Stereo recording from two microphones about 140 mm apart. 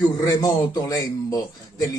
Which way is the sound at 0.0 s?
25° left (ahead or behind).